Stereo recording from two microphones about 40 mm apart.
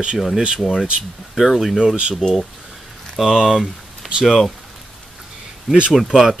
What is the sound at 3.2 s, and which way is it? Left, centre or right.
Speech, centre.